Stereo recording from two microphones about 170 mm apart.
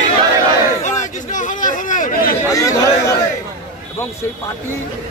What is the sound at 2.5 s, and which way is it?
Chatter, 20° left (ahead or behind).